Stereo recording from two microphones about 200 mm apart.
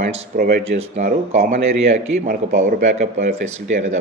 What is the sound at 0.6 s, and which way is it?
A man's voice, 35° right (ahead or behind).